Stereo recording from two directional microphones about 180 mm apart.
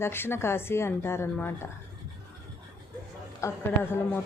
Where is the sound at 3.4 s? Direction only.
15° left (ahead or behind).